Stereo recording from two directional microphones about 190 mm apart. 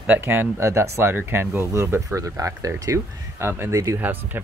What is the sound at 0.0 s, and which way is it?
Speech, 10° right (ahead or behind).